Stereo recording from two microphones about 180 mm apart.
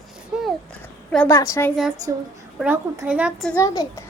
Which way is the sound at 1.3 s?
15° left (ahead or behind).